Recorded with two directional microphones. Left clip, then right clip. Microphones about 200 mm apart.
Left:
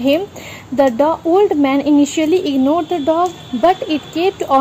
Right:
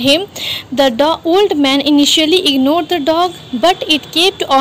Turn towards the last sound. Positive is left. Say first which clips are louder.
# right 4 dB
turn(degrees=-5)  # may be behind; listen again after turning